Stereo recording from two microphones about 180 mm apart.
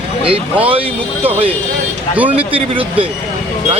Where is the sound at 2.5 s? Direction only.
30° right (ahead or behind).